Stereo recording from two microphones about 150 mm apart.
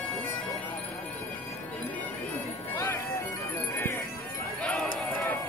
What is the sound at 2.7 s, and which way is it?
Bagpipes, 20° left (ahead or behind).